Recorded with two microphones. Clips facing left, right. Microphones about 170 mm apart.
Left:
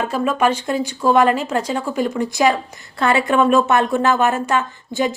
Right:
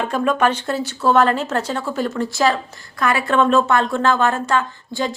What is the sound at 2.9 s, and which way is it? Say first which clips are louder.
Speech: left 3 dB; 25° left (ahead or behind).